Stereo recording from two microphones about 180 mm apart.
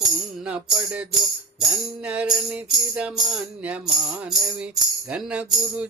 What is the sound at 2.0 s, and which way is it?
Music, 5° right (ahead or behind).